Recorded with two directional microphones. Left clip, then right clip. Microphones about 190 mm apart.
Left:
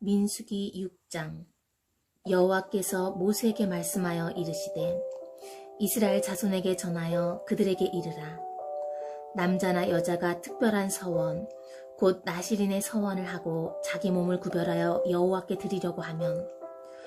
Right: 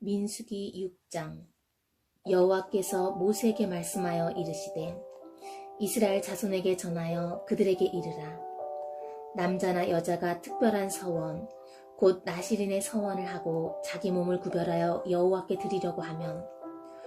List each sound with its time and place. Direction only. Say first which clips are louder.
0.0 s a woman's voice: left 3 dB; 40° left (ahead or behind)
2.2 s a woman's voice: even; 35° left (ahead or behind)